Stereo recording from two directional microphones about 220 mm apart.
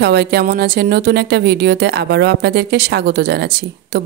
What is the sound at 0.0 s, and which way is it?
Speech, 50° right (ahead or behind).